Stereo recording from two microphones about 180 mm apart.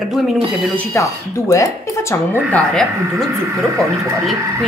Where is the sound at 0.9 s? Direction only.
15° left (ahead or behind).